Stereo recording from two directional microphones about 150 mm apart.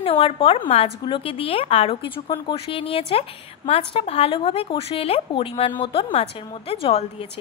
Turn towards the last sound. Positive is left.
turn(degrees=40)  # may be behind; listen again after turning